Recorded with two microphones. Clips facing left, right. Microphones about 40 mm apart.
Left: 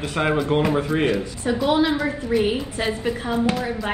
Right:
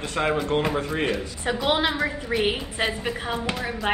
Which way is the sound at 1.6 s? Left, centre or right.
Right.